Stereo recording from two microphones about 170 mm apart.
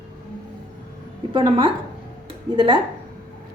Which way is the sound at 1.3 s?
30° right (ahead or behind).